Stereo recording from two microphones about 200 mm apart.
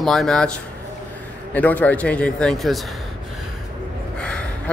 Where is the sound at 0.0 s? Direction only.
Centre (ahead or behind).